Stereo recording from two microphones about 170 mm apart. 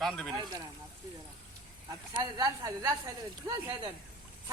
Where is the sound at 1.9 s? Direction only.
20° right (ahead or behind).